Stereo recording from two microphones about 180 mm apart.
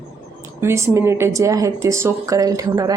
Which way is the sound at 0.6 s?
15° right (ahead or behind).